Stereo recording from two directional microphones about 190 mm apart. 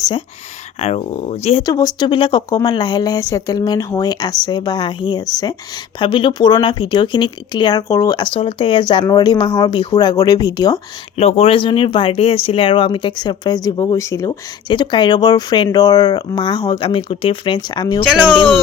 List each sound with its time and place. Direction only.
0.8 s speech: 35° left (ahead or behind)
11.2 s speech: 35° left (ahead or behind)